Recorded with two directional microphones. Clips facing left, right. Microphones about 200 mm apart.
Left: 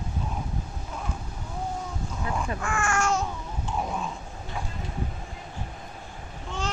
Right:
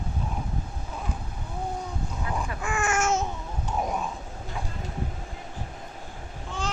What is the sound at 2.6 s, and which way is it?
Babbling, 20° right (ahead or behind).